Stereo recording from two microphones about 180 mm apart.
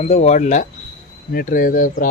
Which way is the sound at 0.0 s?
35° left (ahead or behind).